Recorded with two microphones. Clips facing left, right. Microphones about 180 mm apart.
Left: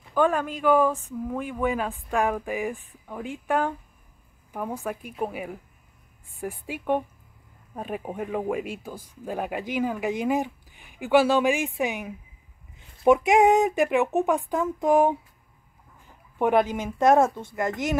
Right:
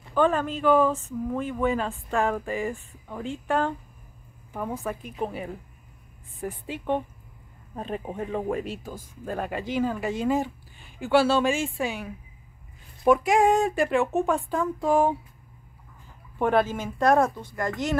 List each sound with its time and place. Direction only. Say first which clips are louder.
0.1 s speech: even; 10° left (ahead or behind)
16.3 s speech: left 1 dB; 15° left (ahead or behind)